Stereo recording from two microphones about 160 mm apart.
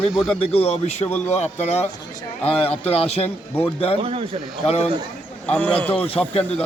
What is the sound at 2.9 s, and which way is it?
Speech, 40° left (ahead or behind).